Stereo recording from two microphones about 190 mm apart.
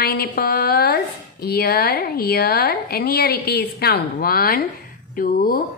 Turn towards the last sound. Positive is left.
turn(degrees=50)  # may be behind; listen again after turning